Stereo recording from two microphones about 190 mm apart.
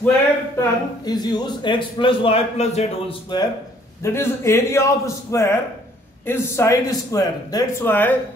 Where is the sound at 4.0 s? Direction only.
15° left (ahead or behind).